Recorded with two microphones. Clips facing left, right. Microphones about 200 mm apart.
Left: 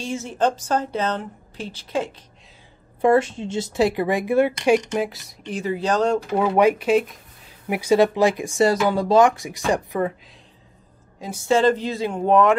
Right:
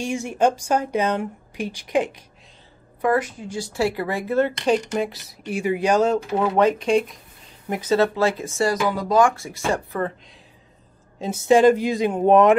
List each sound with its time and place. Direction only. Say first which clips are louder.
0.0 s speech: right 2 dB; 15° right (ahead or behind)
3.0 s speech: left 4 dB; 25° left (ahead or behind); by 5.2 s 5° left (ahead or behind)
5.4 s speech: right 3 dB; 10° right (ahead or behind)
6.5 s speech: left 1 dB; 10° left (ahead or behind)
11.1 s speech: right 4 dB; 25° right (ahead or behind)